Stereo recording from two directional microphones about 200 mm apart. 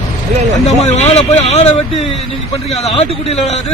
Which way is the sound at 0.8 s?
35° left (ahead or behind).